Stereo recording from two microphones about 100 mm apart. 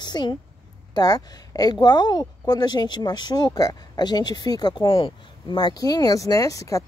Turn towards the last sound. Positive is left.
turn(degrees=35)  # may be behind; listen again after turning